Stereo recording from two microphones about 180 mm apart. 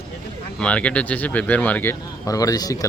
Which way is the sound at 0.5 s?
5° left (ahead or behind).